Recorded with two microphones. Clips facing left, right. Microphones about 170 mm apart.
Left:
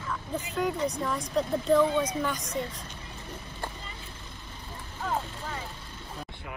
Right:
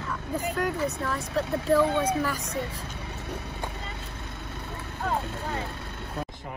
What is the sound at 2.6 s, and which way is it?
Vehicle, 70° right (ahead or behind).